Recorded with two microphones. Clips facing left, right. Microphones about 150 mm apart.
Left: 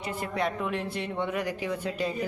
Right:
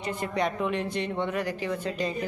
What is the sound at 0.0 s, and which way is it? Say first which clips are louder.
Speech: right 2 dB; 5° left (ahead or behind).